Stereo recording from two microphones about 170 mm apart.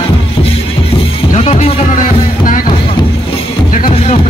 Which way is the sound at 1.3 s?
40° left (ahead or behind).